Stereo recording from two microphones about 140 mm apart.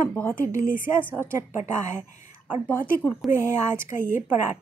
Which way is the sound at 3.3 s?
20° right (ahead or behind).